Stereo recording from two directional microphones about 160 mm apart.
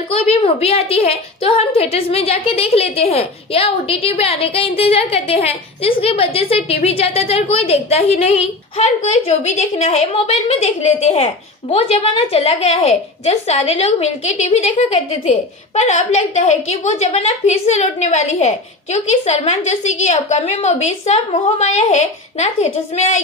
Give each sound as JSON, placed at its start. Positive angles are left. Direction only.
{"t": 0.1, "sound": "a woman's voice", "side_deg": 40}